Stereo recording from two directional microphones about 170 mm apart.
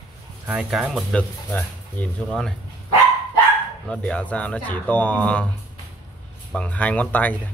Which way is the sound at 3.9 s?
5° left (ahead or behind).